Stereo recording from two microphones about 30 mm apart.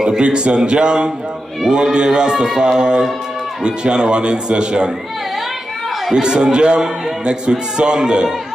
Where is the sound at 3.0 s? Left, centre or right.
Centre.